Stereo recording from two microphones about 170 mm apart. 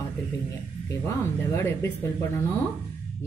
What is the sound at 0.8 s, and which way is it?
Speech, 15° left (ahead or behind).